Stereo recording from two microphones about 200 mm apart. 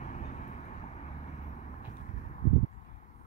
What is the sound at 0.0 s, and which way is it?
Vehicle, 35° left (ahead or behind).